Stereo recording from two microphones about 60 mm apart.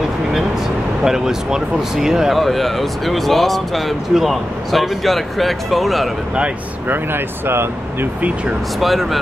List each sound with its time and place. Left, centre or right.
1.0 s speech: centre
6.9 s speech: right
8.7 s speech: centre